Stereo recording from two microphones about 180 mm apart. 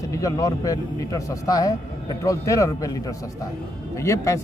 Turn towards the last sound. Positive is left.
turn(degrees=15)  # may be behind; listen again after turning